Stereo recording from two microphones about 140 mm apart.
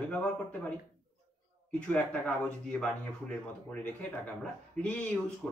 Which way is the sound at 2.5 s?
10° left (ahead or behind).